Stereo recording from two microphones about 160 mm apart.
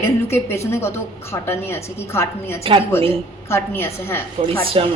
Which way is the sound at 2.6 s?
35° right (ahead or behind).